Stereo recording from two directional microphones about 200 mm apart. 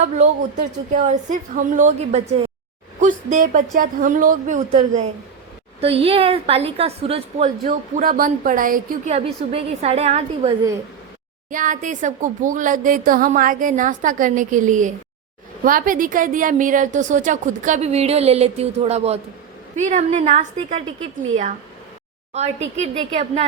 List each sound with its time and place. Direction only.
0.2 s a woman's voice: 35° right (ahead or behind)
7.7 s speech: 45° right (ahead or behind)
9.1 s a woman's voice: 30° right (ahead or behind)
11.5 s a woman's voice: 40° right (ahead or behind)
22.3 s a woman's voice: 35° right (ahead or behind)